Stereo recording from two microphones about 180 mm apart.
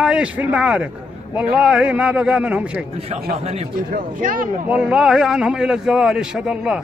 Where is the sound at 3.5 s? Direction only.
50° right (ahead or behind).